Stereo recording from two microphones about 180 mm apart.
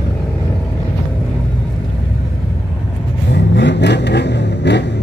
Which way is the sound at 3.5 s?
75° left (ahead or behind).